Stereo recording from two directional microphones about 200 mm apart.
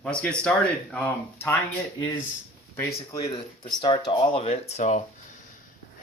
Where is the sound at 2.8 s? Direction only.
15° left (ahead or behind); by 5.0 s 35° left (ahead or behind).